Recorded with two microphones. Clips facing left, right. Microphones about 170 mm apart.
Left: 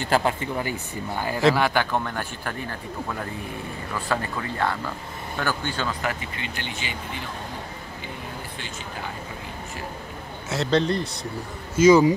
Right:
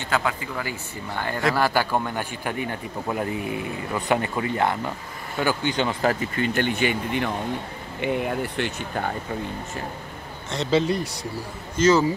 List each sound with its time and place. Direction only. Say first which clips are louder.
0.1 s speech: left 3 dB; 30° left (ahead or behind)
1.1 s speech: even; 10° left (ahead or behind)
1.5 s a man's voice: even; 5° right (ahead or behind)
6.0 s speech: right 7 dB; 45° right (ahead or behind)
10.5 s speech: even; centre (ahead or behind)
11.7 s speech: left 4 dB; 10° left (ahead or behind)